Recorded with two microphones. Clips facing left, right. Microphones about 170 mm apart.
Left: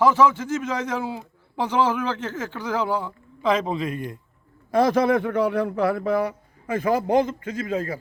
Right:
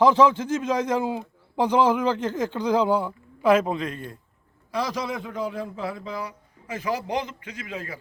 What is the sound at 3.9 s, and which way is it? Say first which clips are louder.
Speech: left 4 dB; 15° left (ahead or behind).